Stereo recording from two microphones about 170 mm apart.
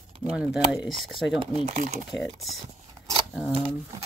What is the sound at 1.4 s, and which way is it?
Speech, 35° right (ahead or behind).